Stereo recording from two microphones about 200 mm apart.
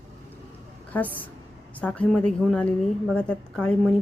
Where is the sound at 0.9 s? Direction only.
10° left (ahead or behind).